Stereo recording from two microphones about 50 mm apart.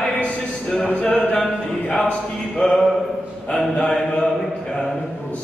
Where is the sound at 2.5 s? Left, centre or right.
Centre.